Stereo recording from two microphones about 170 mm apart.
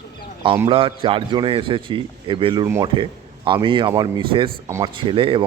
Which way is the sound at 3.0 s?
30° right (ahead or behind).